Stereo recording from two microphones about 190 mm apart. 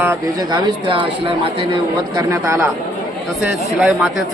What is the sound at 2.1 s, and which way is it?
A man's voice, 15° right (ahead or behind).